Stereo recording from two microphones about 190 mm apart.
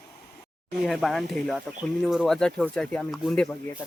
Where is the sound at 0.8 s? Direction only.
Centre (ahead or behind).